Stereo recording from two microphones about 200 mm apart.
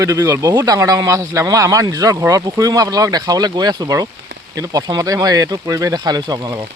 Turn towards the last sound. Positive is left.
turn(degrees=-20)  # may be behind; listen again after turning